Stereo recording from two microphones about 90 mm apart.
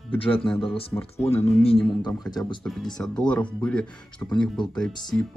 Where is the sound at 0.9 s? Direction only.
10° left (ahead or behind).